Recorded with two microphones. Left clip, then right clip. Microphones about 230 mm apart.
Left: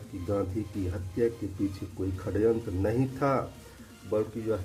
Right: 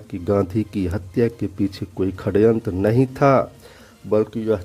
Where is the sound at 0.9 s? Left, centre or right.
Right.